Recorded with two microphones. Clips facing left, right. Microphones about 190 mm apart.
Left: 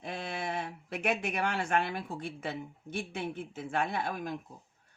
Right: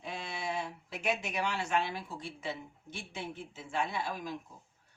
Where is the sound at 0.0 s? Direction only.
55° left (ahead or behind).